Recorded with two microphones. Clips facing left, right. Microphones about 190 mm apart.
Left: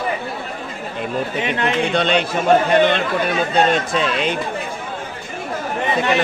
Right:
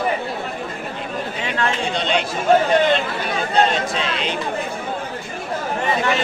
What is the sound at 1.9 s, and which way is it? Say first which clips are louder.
Speech: left 4 dB; 60° left (ahead or behind).